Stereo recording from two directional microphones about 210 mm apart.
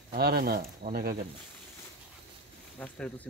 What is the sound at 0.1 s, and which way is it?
Speech, 45° right (ahead or behind).